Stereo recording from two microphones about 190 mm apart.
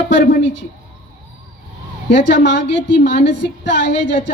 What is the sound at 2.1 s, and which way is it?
A woman's voice, 70° left (ahead or behind).